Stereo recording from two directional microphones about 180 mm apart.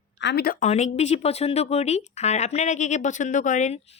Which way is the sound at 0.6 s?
40° left (ahead or behind).